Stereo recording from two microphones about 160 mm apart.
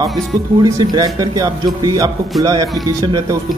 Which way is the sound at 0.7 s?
20° right (ahead or behind).